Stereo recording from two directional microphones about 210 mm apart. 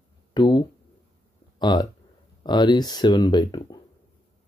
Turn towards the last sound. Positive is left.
turn(degrees=20)  # may be behind; listen again after turning